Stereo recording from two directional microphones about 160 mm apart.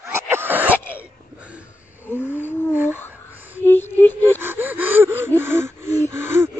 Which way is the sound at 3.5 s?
15° left (ahead or behind).